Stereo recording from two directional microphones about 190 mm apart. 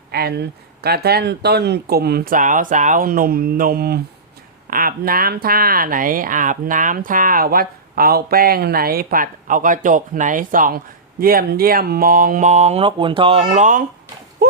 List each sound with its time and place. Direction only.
0.1 s speech: 55° right (ahead or behind)